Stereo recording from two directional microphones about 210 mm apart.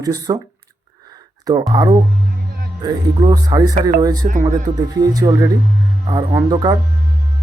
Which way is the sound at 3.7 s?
40° right (ahead or behind).